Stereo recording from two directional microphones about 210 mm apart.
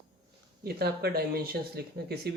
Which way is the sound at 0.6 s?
50° right (ahead or behind).